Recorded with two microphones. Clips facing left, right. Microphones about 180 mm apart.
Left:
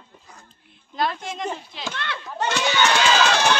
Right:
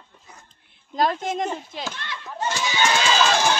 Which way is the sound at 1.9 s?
70° left (ahead or behind).